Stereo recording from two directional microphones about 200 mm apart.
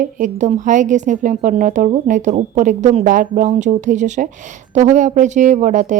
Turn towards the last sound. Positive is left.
turn(degrees=-40)  # may be behind; listen again after turning